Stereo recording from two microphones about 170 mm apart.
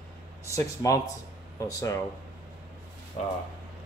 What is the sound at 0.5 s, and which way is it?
Speech, 20° left (ahead or behind).